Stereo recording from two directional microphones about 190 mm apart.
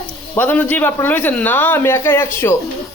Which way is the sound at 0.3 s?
10° left (ahead or behind).